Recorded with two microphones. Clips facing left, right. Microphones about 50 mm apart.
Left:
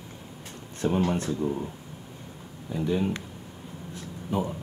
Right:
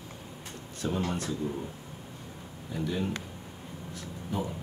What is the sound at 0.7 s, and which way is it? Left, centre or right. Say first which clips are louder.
Speech: left 6 dB; left.